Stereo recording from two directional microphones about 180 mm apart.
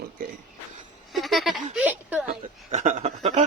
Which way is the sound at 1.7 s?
10° right (ahead or behind).